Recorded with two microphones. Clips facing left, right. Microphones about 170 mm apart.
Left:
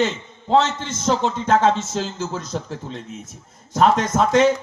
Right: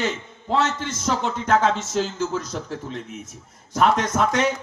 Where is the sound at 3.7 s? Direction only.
30° left (ahead or behind).